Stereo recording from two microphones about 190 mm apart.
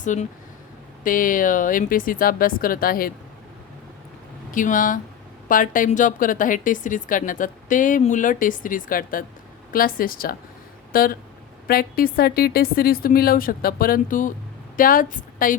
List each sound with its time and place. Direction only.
0.0 s speech: 40° left (ahead or behind)
4.5 s a woman's voice: 45° left (ahead or behind)